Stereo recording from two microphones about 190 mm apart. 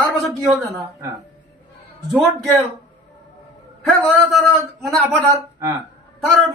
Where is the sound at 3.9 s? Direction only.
Centre (ahead or behind).